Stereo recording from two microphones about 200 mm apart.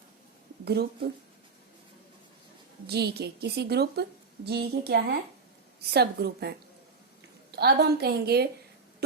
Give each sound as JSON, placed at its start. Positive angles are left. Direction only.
{"t": 0.6, "sound": "speech", "side_deg": -55}
{"t": 2.8, "sound": "a woman's voice", "side_deg": -55}